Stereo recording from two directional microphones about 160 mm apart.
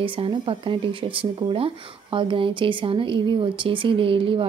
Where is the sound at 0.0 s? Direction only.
35° right (ahead or behind).